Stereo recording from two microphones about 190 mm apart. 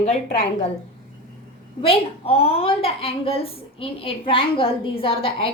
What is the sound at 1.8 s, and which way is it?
A woman's voice, 30° left (ahead or behind).